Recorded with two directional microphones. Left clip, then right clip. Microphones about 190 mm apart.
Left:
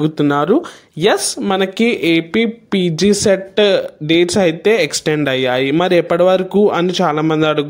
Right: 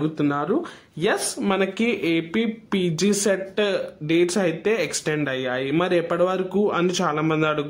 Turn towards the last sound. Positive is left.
turn(degrees=30)  # may be behind; listen again after turning